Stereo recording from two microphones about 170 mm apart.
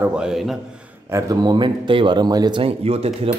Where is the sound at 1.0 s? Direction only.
20° right (ahead or behind).